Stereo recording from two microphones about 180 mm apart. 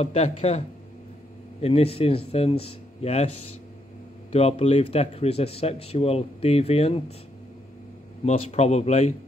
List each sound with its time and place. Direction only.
0.0 s speech: 35° left (ahead or behind)
4.3 s speech: 35° left (ahead or behind)
8.3 s speech: 40° left (ahead or behind)